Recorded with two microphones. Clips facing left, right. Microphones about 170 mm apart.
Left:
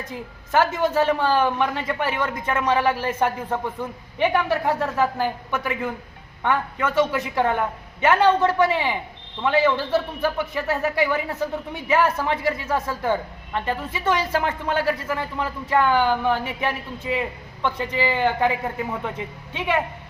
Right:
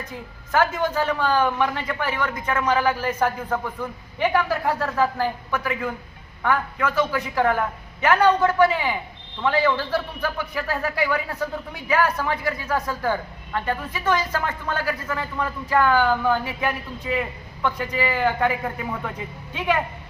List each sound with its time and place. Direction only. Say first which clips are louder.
0.5 s a man's voice: left 2 dB; 30° left (ahead or behind)
19.5 s a man's voice: even; 25° left (ahead or behind)